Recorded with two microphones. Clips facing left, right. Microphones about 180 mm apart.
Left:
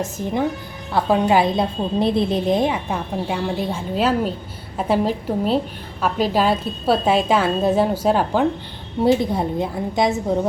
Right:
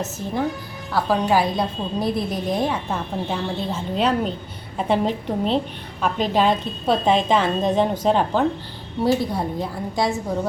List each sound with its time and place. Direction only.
0.9 s a woman's voice: 25° left (ahead or behind)
9.0 s a woman's voice: 20° left (ahead or behind)